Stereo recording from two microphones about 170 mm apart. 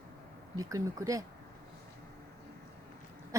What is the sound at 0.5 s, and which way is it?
Speech, 20° right (ahead or behind).